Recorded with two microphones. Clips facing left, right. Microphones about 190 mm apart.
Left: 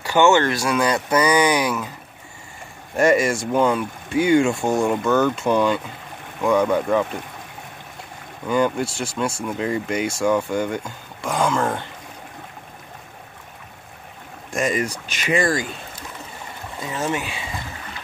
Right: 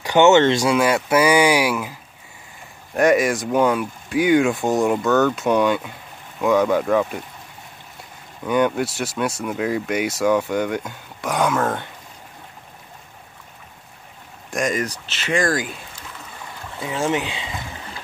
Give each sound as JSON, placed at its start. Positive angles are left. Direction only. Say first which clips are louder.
{"t": 0.0, "sound": "speech", "louder": "right 3 dB", "side_deg": -20}
{"t": 0.7, "sound": "speech", "louder": "right 2 dB", "side_deg": -5}
{"t": 3.0, "sound": "speech", "louder": "right 1 dB", "side_deg": 0}
{"t": 8.5, "sound": "speech", "louder": "right 1 dB", "side_deg": 0}
{"t": 14.5, "sound": "speech", "louder": "even", "side_deg": 5}
{"t": 16.8, "sound": "speech", "louder": "right 3 dB", "side_deg": -10}